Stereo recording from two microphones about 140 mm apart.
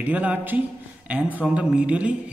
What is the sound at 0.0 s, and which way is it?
Speech, 10° right (ahead or behind).